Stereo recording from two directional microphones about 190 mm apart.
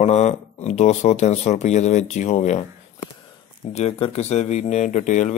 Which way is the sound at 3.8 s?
30° left (ahead or behind).